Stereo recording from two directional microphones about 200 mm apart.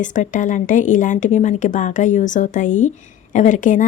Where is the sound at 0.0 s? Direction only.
40° left (ahead or behind).